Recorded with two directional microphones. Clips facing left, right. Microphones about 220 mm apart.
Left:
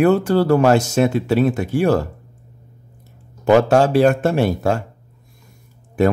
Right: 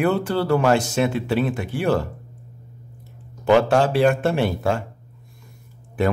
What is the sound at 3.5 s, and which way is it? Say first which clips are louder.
Speech: left 3 dB; 40° left (ahead or behind).